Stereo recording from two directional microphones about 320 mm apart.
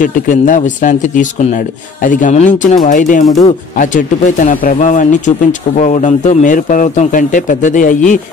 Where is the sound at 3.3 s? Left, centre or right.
Centre.